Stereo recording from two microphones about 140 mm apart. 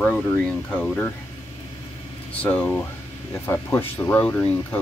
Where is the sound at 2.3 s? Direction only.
10° left (ahead or behind).